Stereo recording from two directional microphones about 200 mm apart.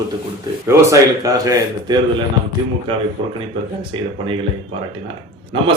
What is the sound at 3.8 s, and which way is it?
Speech, 25° right (ahead or behind).